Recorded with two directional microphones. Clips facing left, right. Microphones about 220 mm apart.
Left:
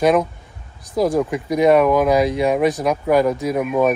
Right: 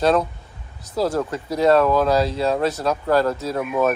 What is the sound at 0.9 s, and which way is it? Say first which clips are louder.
Speech: left 4 dB; 15° left (ahead or behind).